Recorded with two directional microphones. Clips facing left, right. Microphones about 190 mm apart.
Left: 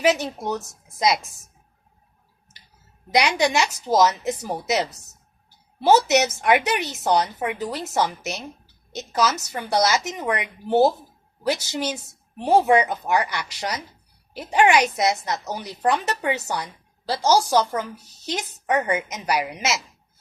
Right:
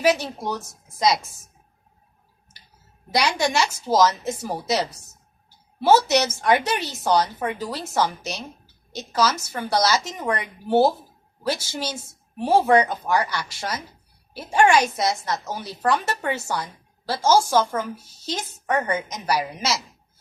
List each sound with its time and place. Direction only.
0.0 s speech: 20° left (ahead or behind)
3.1 s speech: 15° left (ahead or behind)